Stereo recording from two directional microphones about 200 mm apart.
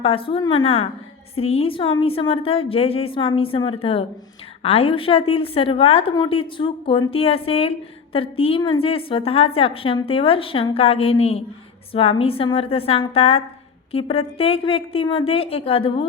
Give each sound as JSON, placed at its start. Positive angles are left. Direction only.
{"t": 0.0, "sound": "a woman's voice", "side_deg": 25}